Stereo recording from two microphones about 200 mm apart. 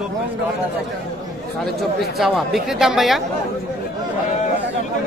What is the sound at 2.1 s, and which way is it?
Speech, centre (ahead or behind).